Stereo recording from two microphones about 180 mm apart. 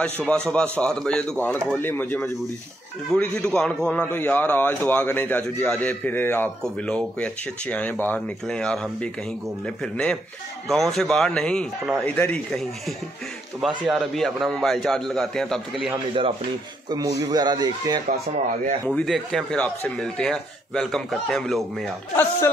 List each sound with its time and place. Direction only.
0.0 s a man's voice: 5° left (ahead or behind)
17.2 s a man's voice: 20° right (ahead or behind)
18.9 s speech: centre (ahead or behind)
22.1 s a man's voice: 15° left (ahead or behind)